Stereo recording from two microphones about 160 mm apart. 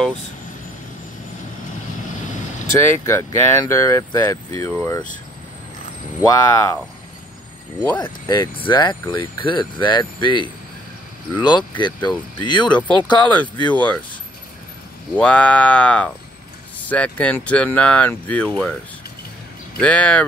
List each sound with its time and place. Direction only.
2.7 s speech: 15° left (ahead or behind)
6.2 s speech: 20° left (ahead or behind)
8.0 s speech: 30° left (ahead or behind)
13.7 s speech: 10° left (ahead or behind)
15.1 s speech: 10° left (ahead or behind)
19.8 s speech: 10° left (ahead or behind)